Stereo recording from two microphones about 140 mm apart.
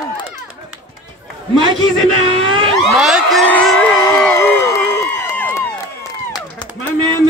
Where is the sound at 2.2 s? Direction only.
40° right (ahead or behind).